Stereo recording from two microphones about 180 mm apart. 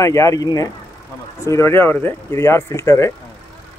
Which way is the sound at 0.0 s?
20° left (ahead or behind).